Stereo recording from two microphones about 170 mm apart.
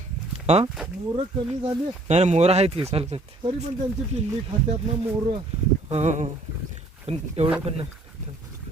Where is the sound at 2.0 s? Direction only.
40° right (ahead or behind).